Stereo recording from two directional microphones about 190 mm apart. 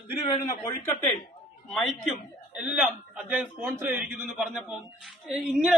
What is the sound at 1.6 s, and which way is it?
A man's voice, centre (ahead or behind).